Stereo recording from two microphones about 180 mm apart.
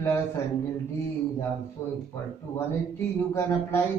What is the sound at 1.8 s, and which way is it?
Speech, 15° left (ahead or behind).